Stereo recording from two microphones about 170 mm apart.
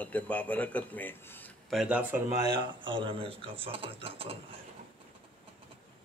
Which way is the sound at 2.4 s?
25° right (ahead or behind).